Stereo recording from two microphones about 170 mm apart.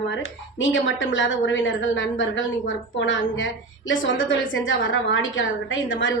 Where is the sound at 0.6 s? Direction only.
90° left.